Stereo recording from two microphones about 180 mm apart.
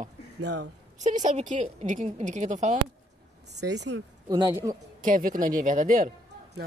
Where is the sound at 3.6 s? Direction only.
70° right (ahead or behind).